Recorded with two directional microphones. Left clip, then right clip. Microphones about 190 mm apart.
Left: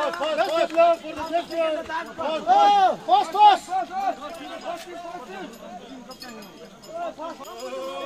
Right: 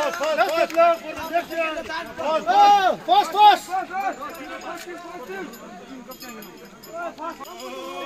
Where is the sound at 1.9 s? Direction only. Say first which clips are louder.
Right 2 dB; 40° right (ahead or behind).